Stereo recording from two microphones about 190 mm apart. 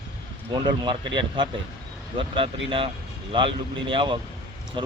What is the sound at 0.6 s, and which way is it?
Speech, 25° right (ahead or behind).